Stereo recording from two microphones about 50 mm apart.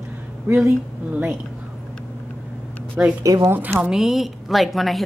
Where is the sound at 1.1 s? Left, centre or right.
Right.